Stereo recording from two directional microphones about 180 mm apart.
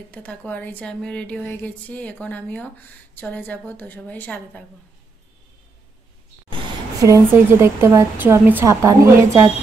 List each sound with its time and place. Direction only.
0.1 s speech: 10° left (ahead or behind)
6.5 s speech: 25° right (ahead or behind)